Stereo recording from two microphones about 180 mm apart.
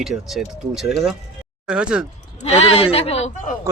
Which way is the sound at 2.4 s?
35° left (ahead or behind).